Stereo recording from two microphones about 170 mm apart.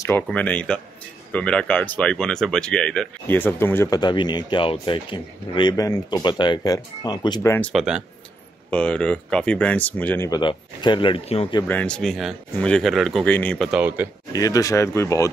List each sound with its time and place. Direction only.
0.0 s speech: 10° left (ahead or behind)
7.7 s speech: 5° right (ahead or behind); by 10.4 s 15° left (ahead or behind)
10.4 s speech: 25° left (ahead or behind)
11.6 s speech: 10° left (ahead or behind)
13.7 s speech: 10° right (ahead or behind)
14.3 s speech: 20° left (ahead or behind)